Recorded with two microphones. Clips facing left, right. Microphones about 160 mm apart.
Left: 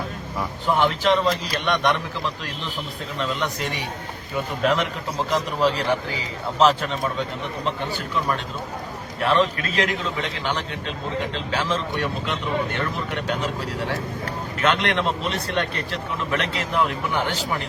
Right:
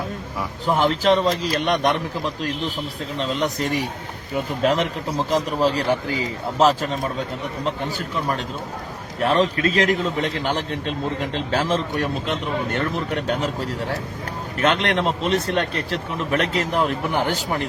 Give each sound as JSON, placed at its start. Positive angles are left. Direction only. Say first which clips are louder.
{"t": 0.8, "sound": "a man's voice", "louder": "right 2 dB", "side_deg": -35}
{"t": 7.6, "sound": "speech", "louder": "right 1 dB", "side_deg": -40}
{"t": 14.6, "sound": "speech", "louder": "right 2 dB", "side_deg": -40}